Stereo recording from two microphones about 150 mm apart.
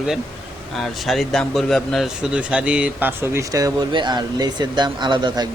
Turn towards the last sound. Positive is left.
turn(degrees=-30)  # may be behind; listen again after turning